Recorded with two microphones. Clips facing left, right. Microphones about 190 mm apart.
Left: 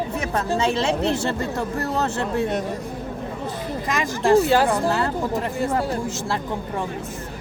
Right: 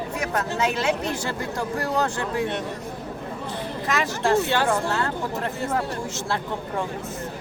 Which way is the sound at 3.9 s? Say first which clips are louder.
Left 4 dB; 15° left (ahead or behind).